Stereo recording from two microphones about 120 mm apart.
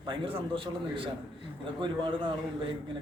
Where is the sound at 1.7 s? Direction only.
45° right (ahead or behind).